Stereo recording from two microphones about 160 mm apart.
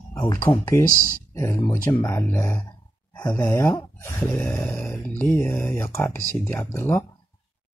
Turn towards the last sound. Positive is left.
turn(degrees=15)  # may be behind; listen again after turning